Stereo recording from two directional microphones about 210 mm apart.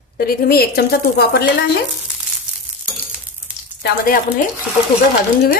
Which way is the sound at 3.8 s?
45° left (ahead or behind).